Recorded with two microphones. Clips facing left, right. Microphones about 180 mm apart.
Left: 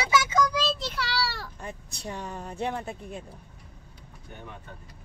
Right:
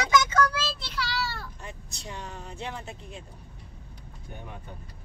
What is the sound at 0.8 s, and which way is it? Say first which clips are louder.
Child singing: left 2 dB; 55° left (ahead or behind).